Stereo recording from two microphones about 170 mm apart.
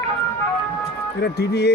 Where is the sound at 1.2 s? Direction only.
75° left (ahead or behind).